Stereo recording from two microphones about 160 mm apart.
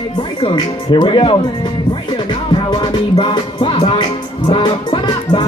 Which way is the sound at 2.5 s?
30° left (ahead or behind).